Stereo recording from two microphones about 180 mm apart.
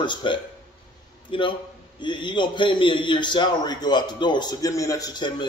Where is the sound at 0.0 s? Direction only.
25° left (ahead or behind).